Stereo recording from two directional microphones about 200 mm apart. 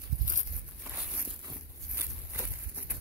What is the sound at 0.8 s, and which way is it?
Walk, 5° right (ahead or behind).